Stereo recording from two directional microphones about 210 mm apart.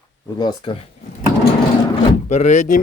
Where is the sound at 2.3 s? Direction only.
35° left (ahead or behind).